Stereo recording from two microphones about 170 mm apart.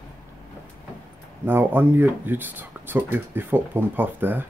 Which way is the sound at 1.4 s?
10° right (ahead or behind).